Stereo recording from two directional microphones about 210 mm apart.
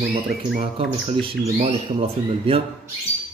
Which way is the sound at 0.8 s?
25° right (ahead or behind).